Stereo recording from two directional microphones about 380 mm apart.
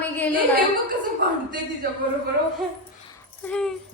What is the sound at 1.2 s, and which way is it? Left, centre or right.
Speech, right.